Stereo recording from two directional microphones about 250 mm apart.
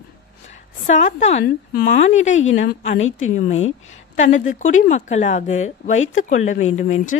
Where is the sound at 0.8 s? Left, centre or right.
Left.